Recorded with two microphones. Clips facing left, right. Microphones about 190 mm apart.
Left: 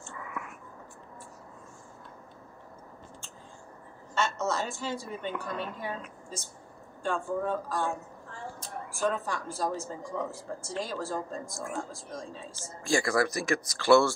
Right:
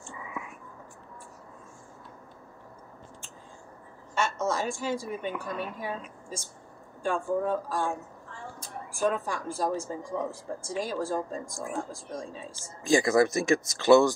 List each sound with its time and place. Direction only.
0.0 s whispering: 15° right (ahead or behind)
4.1 s speech: 10° right (ahead or behind)
8.9 s speech: 10° right (ahead or behind)